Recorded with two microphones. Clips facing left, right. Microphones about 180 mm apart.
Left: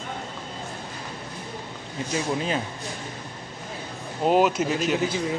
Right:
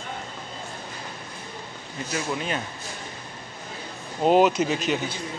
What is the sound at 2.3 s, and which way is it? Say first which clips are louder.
Speech: left 3 dB; 30° left (ahead or behind).